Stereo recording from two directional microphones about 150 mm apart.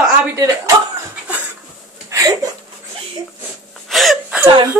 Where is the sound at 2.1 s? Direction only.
25° right (ahead or behind).